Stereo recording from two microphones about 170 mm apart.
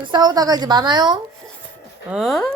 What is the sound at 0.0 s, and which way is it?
Speech, 25° right (ahead or behind).